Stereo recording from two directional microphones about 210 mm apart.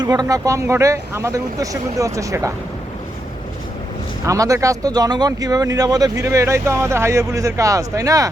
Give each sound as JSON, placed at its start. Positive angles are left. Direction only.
{"t": 0.0, "sound": "speech", "side_deg": -20}
{"t": 4.3, "sound": "speech", "side_deg": -15}